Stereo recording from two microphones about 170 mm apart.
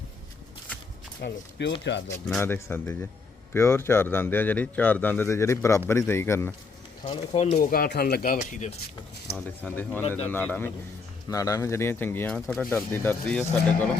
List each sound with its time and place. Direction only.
1.2 s speech: 90° left
2.4 s speech: 15° left (ahead or behind)
7.0 s speech: 35° left (ahead or behind)
7.6 s speech: 55° left (ahead or behind)
9.4 s speech: 10° left (ahead or behind)